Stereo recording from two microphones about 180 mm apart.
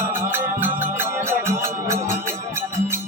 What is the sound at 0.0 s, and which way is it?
Music, 15° right (ahead or behind).